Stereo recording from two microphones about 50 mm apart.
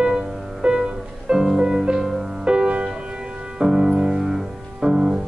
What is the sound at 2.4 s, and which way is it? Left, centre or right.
Music, right.